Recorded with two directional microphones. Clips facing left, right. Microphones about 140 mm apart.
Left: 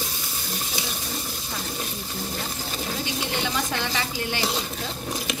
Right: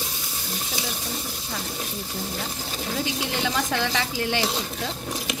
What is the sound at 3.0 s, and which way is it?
Speech, 90° right.